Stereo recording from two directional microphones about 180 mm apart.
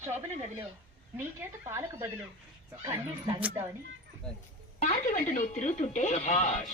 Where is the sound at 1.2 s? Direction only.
15° right (ahead or behind).